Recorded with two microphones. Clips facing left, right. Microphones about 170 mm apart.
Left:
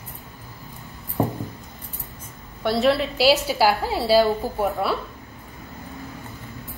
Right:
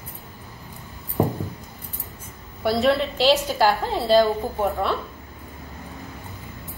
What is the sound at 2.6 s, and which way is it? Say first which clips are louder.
A woman's voice: even; centre (ahead or behind).